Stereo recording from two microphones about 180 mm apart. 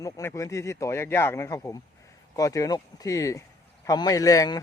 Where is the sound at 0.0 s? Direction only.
15° left (ahead or behind).